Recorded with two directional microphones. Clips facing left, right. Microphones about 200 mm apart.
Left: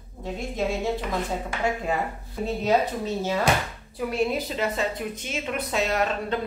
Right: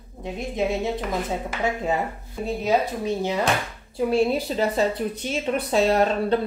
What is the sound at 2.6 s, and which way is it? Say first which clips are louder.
Speech: even; 10° right (ahead or behind).